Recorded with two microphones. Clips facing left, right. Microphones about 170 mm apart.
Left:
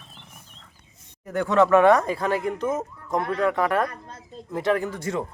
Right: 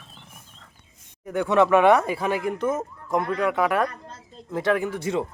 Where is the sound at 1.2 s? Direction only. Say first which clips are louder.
Even; 10° right (ahead or behind).